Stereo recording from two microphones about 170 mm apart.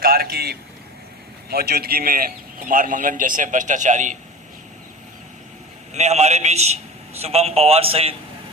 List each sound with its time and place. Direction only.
0.0 s a sound: 60° right (ahead or behind)
1.5 s a man's voice: 65° right (ahead or behind); by 4.2 s 45° right (ahead or behind)
5.9 s a man's voice: 40° right (ahead or behind)